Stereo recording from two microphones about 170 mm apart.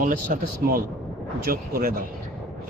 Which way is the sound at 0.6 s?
70° right (ahead or behind).